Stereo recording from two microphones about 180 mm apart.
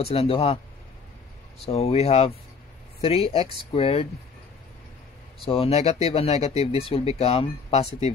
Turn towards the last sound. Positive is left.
turn(degrees=35)  # may be behind; listen again after turning